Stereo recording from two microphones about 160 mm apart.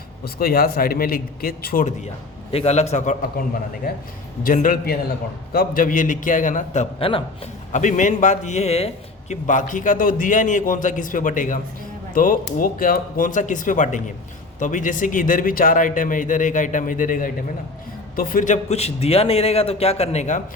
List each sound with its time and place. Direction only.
0.3 s a man's voice: 65° left (ahead or behind)
2.5 s a man's voice: 40° left (ahead or behind)
4.4 s a man's voice: 60° left (ahead or behind)
7.0 s a man's voice: 35° left (ahead or behind)
7.7 s a man's voice: 50° left (ahead or behind)
9.3 s a man's voice: 50° left (ahead or behind)